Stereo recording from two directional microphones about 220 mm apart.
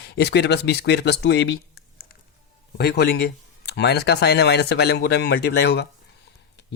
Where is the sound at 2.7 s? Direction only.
45° left (ahead or behind).